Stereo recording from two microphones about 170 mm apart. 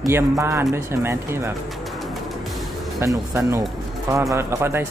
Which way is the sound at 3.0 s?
15° right (ahead or behind).